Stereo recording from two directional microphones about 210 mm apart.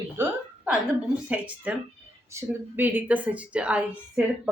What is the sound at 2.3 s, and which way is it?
A woman's voice, 10° right (ahead or behind).